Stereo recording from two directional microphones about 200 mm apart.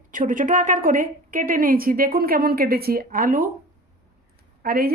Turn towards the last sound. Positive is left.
turn(degrees=-50)  # may be behind; listen again after turning